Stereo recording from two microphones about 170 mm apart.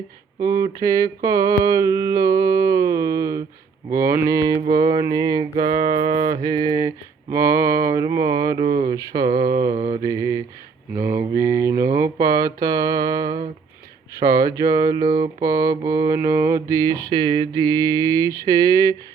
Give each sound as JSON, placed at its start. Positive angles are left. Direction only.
{"t": 0.4, "sound": "mantra", "side_deg": -20}
{"t": 5.9, "sound": "music", "side_deg": -45}
{"t": 6.3, "sound": "mantra", "side_deg": -20}